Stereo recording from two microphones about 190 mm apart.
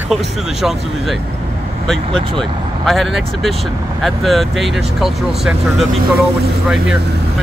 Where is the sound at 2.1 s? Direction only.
25° right (ahead or behind).